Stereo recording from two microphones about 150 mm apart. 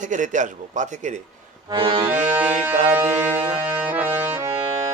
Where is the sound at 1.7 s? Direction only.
40° right (ahead or behind).